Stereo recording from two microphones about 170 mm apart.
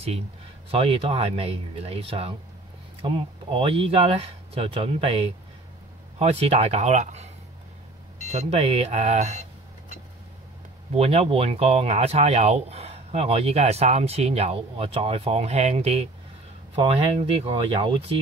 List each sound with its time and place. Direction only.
0.7 s speech: 35° right (ahead or behind)
8.3 s speech: 35° right (ahead or behind)
10.9 s speech: 35° right (ahead or behind)